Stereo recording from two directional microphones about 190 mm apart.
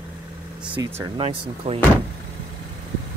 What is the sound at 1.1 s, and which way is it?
Speech, 30° right (ahead or behind).